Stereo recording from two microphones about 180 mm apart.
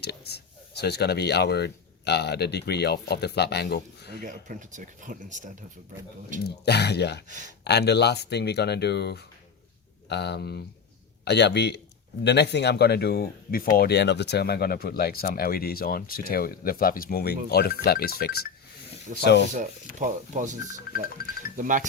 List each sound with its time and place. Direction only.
0.0 s speech: 65° left (ahead or behind)
4.2 s speech: 45° right (ahead or behind)
6.4 s speech: 65° left (ahead or behind)
7.3 s speech: 45° right (ahead or behind)
7.6 s speech: 65° left (ahead or behind)
19.2 s speech: 70° left (ahead or behind)
20.0 s speech: 45° right (ahead or behind)
21.2 s speech: 55° left (ahead or behind)
21.5 s speech: 45° right (ahead or behind)